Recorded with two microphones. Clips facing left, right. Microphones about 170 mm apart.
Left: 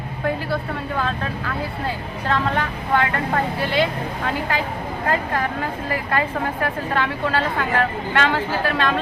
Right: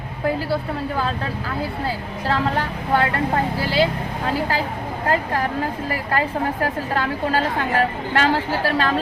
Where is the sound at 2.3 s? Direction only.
35° right (ahead or behind).